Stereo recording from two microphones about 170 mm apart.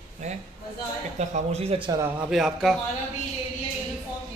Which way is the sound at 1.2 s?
40° right (ahead or behind).